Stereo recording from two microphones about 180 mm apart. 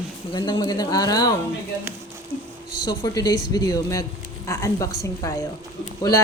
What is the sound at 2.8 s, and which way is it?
A woman's voice, 20° left (ahead or behind).